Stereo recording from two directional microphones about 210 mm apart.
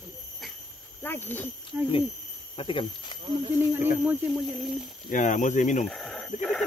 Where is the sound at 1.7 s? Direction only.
10° right (ahead or behind).